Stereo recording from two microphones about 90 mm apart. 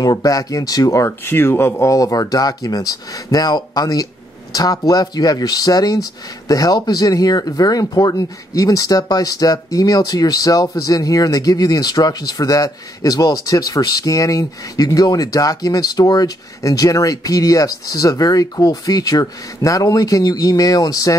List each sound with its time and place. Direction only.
0.0 s speech: 45° left (ahead or behind)